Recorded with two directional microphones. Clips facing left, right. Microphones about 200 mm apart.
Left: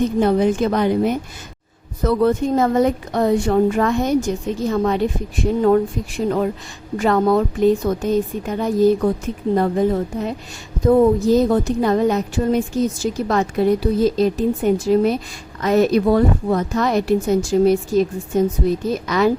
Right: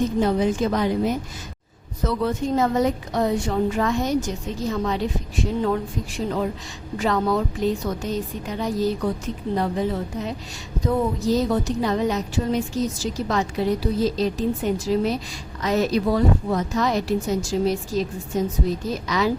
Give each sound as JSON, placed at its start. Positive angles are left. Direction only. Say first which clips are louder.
{"t": 0.2, "sound": "a woman's voice", "louder": "left 5 dB", "side_deg": 60}